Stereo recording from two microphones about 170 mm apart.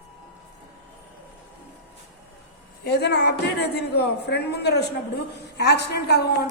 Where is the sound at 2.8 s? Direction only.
80° left.